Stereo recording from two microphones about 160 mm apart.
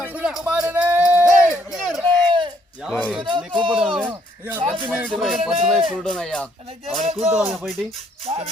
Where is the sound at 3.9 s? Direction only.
10° right (ahead or behind).